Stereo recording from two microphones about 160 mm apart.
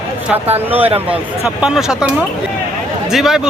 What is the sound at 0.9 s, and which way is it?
Speech, 35° right (ahead or behind).